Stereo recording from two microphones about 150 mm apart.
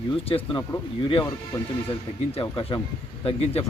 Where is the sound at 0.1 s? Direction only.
35° left (ahead or behind).